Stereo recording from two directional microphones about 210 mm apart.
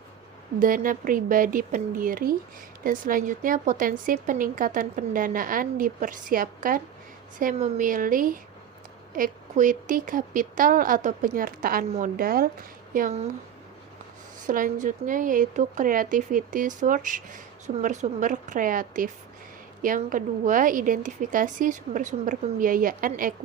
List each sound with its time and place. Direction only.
0.6 s speech: 40° right (ahead or behind)
14.4 s speech: 40° right (ahead or behind)